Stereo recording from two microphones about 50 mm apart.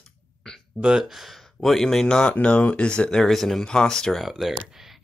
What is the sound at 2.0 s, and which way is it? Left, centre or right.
Speech, centre.